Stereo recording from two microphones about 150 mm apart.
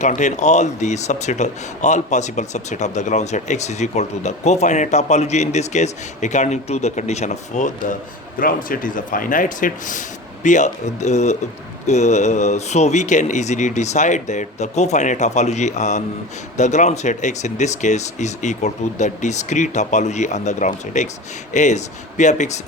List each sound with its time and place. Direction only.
0.0 s speech: 55° left (ahead or behind)
8.4 s speech: 70° left (ahead or behind); by 22.6 s 50° left (ahead or behind)